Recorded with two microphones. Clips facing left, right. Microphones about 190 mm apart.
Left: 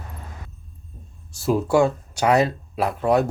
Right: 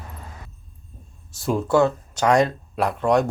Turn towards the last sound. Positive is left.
turn(degrees=5)  # may be behind; listen again after turning